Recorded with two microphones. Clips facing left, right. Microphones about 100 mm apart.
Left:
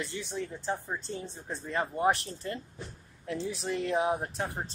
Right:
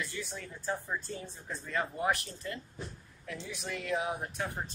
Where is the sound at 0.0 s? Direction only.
20° left (ahead or behind).